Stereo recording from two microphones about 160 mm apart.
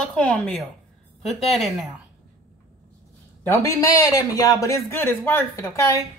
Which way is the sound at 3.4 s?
15° left (ahead or behind).